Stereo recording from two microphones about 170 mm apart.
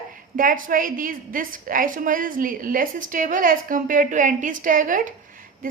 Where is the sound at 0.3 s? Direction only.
55° right (ahead or behind).